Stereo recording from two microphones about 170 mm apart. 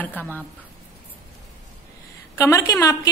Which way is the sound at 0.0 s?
10° left (ahead or behind).